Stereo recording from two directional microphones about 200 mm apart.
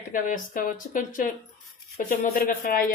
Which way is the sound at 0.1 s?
40° left (ahead or behind).